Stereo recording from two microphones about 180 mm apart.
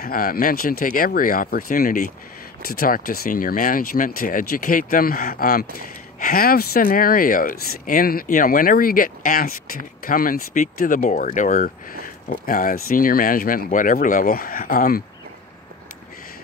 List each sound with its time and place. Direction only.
0.0 s speech: 55° left (ahead or behind)